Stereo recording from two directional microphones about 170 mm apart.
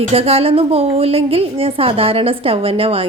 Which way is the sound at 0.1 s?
35° right (ahead or behind).